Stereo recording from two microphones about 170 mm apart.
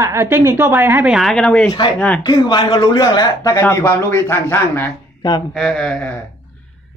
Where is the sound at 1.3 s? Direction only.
5° left (ahead or behind).